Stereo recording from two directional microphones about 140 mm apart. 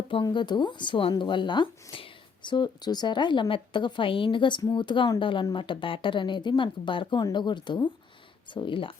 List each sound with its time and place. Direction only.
0.1 s speech: 35° left (ahead or behind)